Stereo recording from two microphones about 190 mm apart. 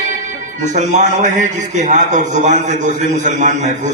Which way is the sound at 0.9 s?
40° right (ahead or behind).